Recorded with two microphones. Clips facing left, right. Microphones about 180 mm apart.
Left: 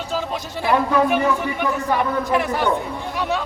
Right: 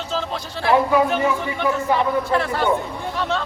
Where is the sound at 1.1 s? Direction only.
15° left (ahead or behind).